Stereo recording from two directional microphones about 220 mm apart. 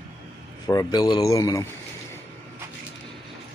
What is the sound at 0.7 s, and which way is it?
Speech, 15° left (ahead or behind).